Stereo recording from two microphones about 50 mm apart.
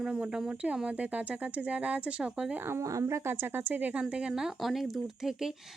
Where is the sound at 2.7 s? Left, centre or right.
Right.